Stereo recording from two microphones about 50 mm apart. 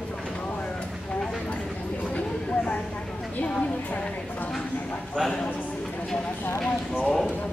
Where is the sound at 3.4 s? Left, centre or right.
Left.